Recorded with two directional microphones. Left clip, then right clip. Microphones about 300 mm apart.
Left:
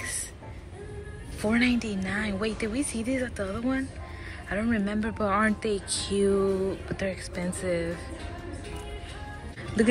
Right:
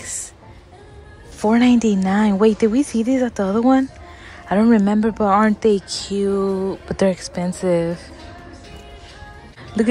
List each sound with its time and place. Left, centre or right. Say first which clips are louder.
1.4 s speech: right 10 dB; centre
9.8 s speech: right 5 dB; centre